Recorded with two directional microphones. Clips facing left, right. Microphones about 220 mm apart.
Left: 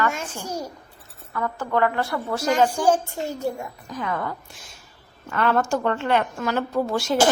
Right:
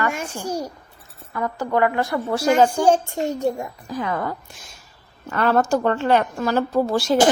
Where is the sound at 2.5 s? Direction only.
30° right (ahead or behind).